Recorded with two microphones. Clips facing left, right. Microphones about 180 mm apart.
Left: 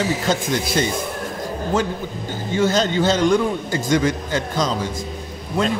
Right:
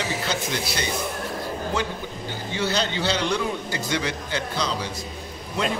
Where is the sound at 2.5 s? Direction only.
45° left (ahead or behind).